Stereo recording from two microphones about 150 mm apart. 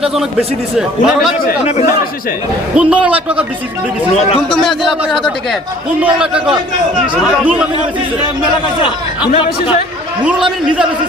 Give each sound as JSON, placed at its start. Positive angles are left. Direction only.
{"t": 0.0, "sound": "a man's voice", "side_deg": -5}
{"t": 2.7, "sound": "a man's voice", "side_deg": -5}
{"t": 4.6, "sound": "a man's voice", "side_deg": 0}
{"t": 9.3, "sound": "speech", "side_deg": 35}
{"t": 10.2, "sound": "a man's voice", "side_deg": -5}